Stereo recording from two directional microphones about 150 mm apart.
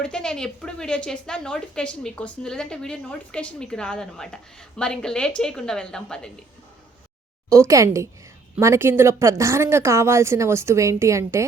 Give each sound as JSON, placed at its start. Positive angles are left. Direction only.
{"t": 0.0, "sound": "a woman's voice", "side_deg": 5}
{"t": 7.5, "sound": "a woman's voice", "side_deg": -20}